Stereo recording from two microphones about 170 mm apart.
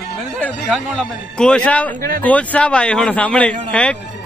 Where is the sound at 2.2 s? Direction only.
10° left (ahead or behind).